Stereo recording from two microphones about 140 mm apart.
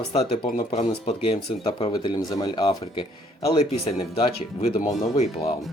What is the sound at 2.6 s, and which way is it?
Speech, 40° left (ahead or behind).